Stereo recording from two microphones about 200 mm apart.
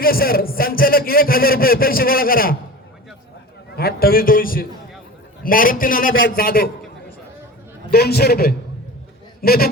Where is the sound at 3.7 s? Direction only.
50° left (ahead or behind).